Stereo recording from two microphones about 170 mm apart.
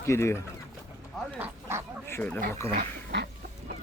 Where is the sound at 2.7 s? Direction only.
80° right.